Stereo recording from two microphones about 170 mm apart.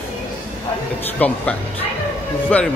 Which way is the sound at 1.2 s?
10° left (ahead or behind).